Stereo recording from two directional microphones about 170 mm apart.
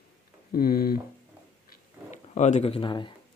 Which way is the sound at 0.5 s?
60° left (ahead or behind).